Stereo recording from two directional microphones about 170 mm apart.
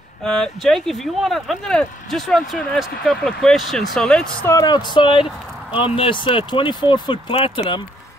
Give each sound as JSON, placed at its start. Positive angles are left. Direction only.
{"t": 0.2, "sound": "speech", "side_deg": 5}
{"t": 4.5, "sound": "speech", "side_deg": 20}